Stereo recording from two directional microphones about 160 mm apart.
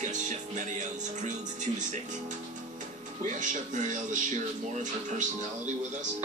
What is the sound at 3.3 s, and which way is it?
Speech, 50° right (ahead or behind).